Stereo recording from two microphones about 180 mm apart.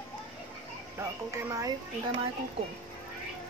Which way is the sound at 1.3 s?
15° right (ahead or behind).